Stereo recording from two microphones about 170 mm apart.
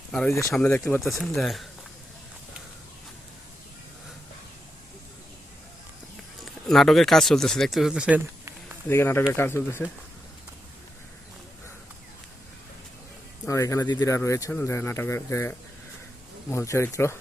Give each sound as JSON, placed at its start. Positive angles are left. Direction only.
{"t": 0.1, "sound": "speech", "side_deg": 5}
{"t": 6.4, "sound": "speech", "side_deg": 0}
{"t": 8.9, "sound": "speech", "side_deg": 15}
{"t": 13.5, "sound": "speech", "side_deg": 20}